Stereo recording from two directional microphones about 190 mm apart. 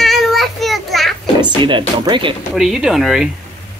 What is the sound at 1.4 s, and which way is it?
Speech, 25° right (ahead or behind).